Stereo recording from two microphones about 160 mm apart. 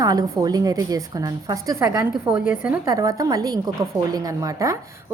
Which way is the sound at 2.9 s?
20° right (ahead or behind).